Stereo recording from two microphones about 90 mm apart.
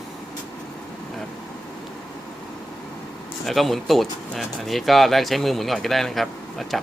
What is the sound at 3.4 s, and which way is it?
Speech, centre (ahead or behind).